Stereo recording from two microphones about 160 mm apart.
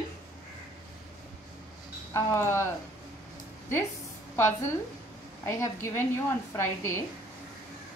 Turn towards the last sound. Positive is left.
turn(degrees=15)  # may be behind; listen again after turning